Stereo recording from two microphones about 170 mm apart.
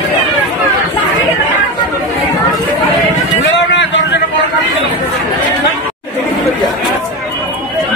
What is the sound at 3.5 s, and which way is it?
Vehicle, 90° left.